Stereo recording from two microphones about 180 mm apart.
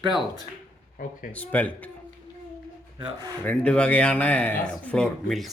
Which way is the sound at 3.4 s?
5° left (ahead or behind).